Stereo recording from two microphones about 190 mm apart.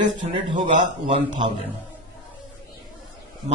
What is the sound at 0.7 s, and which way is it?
Speech, 30° right (ahead or behind).